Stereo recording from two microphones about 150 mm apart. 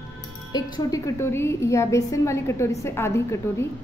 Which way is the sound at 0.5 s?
25° left (ahead or behind).